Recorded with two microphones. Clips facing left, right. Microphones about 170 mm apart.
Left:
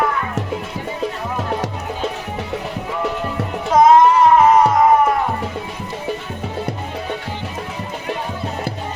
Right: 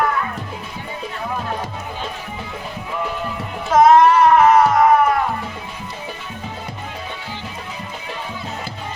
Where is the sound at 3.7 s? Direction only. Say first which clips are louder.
Even; 15° left (ahead or behind).